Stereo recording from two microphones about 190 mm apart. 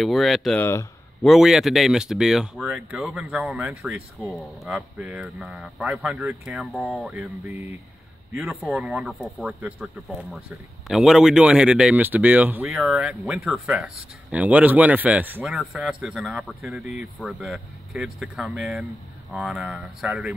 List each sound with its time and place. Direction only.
0.0 s speech: centre (ahead or behind)